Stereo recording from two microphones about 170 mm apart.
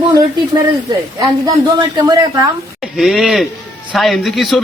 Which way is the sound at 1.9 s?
25° right (ahead or behind).